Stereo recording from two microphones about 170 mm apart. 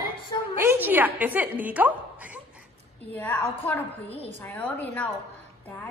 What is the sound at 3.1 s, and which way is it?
A woman's voice, 10° left (ahead or behind).